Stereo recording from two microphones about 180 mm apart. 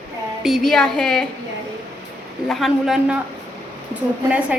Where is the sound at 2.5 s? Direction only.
Centre (ahead or behind).